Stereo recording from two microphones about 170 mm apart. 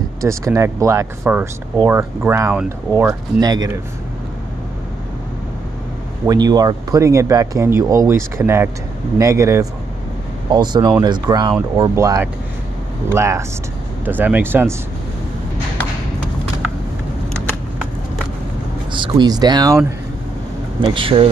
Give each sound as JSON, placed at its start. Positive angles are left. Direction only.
{"t": 0.2, "sound": "speech", "side_deg": -20}
{"t": 6.2, "sound": "speech", "side_deg": -25}
{"t": 18.9, "sound": "speech", "side_deg": -25}
{"t": 20.8, "sound": "speech", "side_deg": -30}